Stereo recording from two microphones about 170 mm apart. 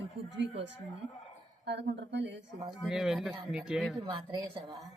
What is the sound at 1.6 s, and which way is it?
Speech, 90° right.